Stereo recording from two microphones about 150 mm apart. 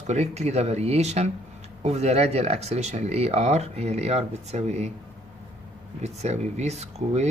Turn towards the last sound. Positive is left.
turn(degrees=-45)  # may be behind; listen again after turning